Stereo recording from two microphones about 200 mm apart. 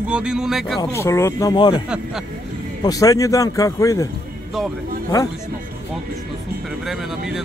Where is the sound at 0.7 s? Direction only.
15° left (ahead or behind).